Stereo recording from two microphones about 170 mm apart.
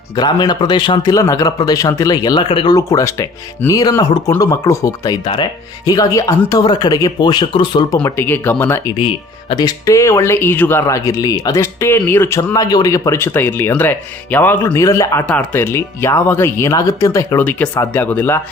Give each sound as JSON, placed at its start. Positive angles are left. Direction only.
{"t": 0.2, "sound": "a man's voice", "side_deg": 25}
{"t": 7.9, "sound": "speech", "side_deg": 15}
{"t": 9.5, "sound": "speech", "side_deg": 25}